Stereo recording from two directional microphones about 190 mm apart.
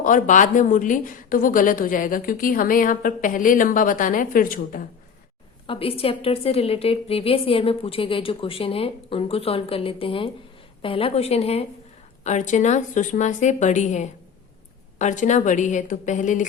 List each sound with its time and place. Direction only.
0.0 s a woman's voice: 40° left (ahead or behind)
5.6 s a woman's voice: 30° left (ahead or behind)